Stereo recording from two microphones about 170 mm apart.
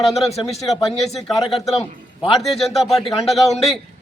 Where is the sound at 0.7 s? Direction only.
Centre (ahead or behind).